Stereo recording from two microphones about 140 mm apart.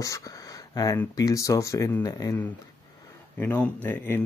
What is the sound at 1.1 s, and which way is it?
Speech, 25° left (ahead or behind).